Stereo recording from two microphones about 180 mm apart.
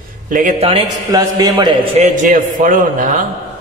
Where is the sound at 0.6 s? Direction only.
35° right (ahead or behind).